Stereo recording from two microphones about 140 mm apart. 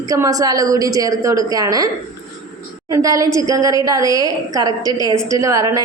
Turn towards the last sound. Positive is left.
turn(degrees=-25)  # may be behind; listen again after turning